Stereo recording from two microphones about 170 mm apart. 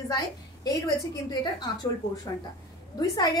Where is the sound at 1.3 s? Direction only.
25° left (ahead or behind).